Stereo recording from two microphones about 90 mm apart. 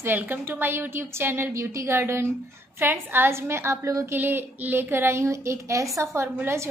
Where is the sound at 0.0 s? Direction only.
20° right (ahead or behind).